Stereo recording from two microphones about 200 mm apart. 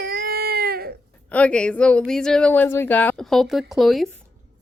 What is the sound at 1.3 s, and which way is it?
Speech, 5° left (ahead or behind).